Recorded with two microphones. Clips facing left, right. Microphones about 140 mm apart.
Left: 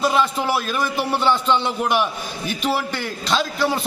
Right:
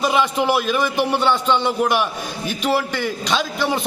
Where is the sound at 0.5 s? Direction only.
5° right (ahead or behind).